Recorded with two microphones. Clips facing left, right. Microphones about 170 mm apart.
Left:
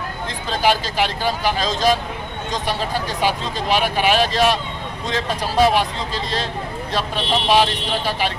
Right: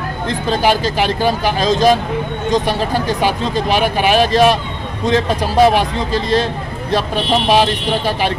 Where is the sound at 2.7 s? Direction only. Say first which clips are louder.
Right 6 dB; 50° right (ahead or behind).